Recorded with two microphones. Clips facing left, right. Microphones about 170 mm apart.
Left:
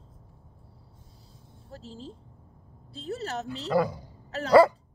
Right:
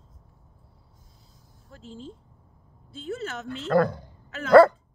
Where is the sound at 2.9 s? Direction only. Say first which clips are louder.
Even; 35° left (ahead or behind).